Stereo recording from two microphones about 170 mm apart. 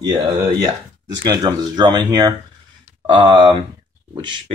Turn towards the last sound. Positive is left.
turn(degrees=-30)  # may be behind; listen again after turning